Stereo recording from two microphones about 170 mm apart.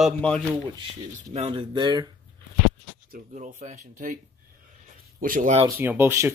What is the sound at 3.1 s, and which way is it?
Speech, 45° right (ahead or behind).